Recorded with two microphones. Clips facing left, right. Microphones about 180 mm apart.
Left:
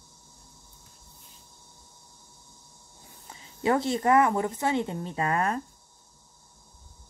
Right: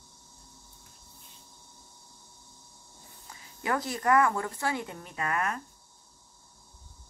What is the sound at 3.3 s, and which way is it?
Speech, 25° left (ahead or behind).